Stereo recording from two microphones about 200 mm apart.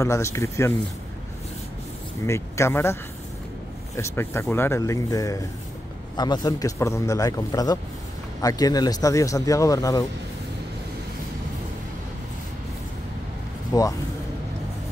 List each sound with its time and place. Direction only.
0.0 s a man's voice: 15° left (ahead or behind)
2.2 s a man's voice: 15° left (ahead or behind)
13.7 s speech: 20° left (ahead or behind)